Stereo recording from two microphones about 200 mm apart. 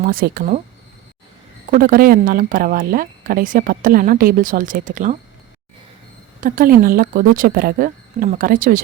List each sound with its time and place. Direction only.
0.0 s speech: 45° right (ahead or behind)
1.7 s speech: 45° right (ahead or behind)
6.4 s speech: 45° right (ahead or behind)